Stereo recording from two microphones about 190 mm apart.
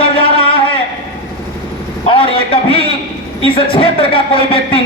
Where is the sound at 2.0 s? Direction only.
30° left (ahead or behind).